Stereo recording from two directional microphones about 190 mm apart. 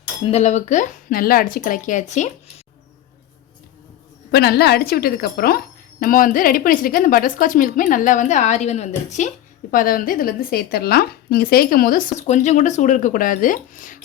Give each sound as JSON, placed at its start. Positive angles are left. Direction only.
{"t": 0.3, "sound": "speech", "side_deg": 35}
{"t": 4.3, "sound": "speech", "side_deg": 55}
{"t": 9.7, "sound": "speech", "side_deg": 50}